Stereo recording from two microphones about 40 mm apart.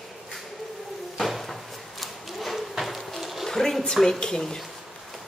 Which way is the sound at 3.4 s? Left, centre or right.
Centre.